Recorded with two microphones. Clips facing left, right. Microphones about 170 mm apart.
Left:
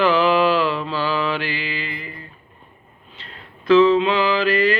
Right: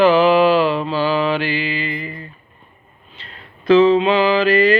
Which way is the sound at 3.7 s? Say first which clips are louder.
Right 2 dB; 15° right (ahead or behind).